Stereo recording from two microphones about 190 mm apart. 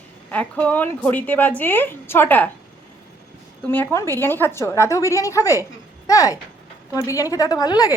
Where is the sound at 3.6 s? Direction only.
10° left (ahead or behind).